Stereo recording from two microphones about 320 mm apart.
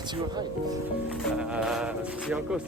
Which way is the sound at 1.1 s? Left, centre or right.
Centre.